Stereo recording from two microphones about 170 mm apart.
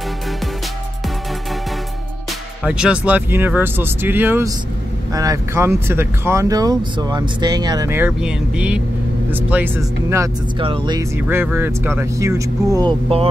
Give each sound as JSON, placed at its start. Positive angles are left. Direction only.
{"t": 2.6, "sound": "speech", "side_deg": -5}
{"t": 10.6, "sound": "speech", "side_deg": -30}
{"t": 11.0, "sound": "speech", "side_deg": -10}